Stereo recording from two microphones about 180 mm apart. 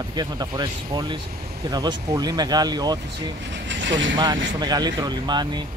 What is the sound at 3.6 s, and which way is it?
Vehicle, 90° right.